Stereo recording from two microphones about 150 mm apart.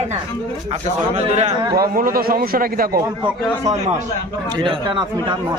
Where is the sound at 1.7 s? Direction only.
85° right.